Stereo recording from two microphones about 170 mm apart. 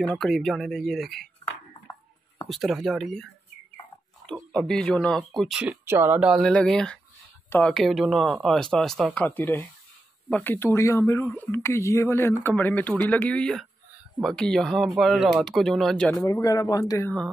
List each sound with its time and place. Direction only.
0.2 s speech: centre (ahead or behind)
2.5 s speech: centre (ahead or behind)
4.3 s speech: 5° left (ahead or behind)
16.2 s speech: 20° left (ahead or behind)